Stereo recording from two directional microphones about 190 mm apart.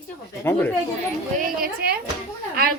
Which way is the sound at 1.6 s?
55° right (ahead or behind).